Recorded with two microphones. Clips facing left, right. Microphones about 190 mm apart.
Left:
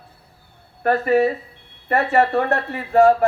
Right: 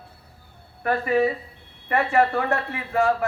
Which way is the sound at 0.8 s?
40° left (ahead or behind).